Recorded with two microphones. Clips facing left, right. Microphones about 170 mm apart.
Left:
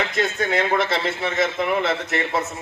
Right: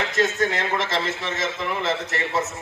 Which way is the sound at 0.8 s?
60° left (ahead or behind).